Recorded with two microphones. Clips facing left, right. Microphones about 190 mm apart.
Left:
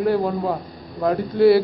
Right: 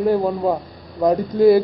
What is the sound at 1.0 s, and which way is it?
Speech, 15° right (ahead or behind).